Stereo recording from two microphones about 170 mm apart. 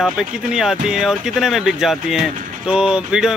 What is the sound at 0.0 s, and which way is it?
Speech, centre (ahead or behind).